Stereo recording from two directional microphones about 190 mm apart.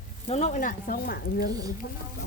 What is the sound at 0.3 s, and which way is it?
Speech, 35° left (ahead or behind).